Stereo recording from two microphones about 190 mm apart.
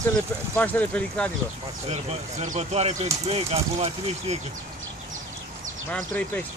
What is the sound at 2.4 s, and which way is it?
Speech, 40° right (ahead or behind).